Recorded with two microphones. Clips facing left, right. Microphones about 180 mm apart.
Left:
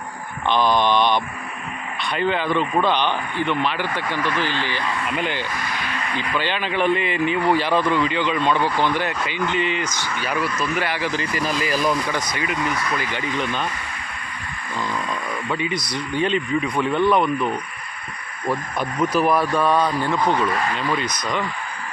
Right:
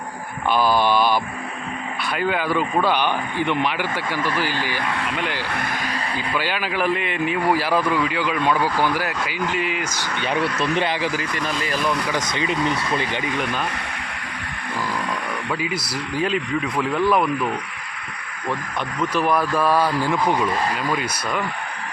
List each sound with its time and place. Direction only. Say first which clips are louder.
0.4 s mantra: even; 5° right (ahead or behind)
2.1 s a man's voice: left 1 dB; 5° right (ahead or behind)
5.4 s speech: right 1 dB; 60° right (ahead or behind); by 6.0 s 45° right (ahead or behind)
6.1 s a man's voice: left 2 dB; 10° right (ahead or behind)
10.2 s speech: right 2 dB; 25° right (ahead or behind)
11.3 s speech: left 2 dB; 5° left (ahead or behind)
12.3 s speech: right 2 dB; 25° right (ahead or behind)
13.4 s speech: even; 5° right (ahead or behind)
15.4 s speech: left 2 dB; 5° right (ahead or behind)
19.1 s a man's voice: left 1 dB; centre (ahead or behind)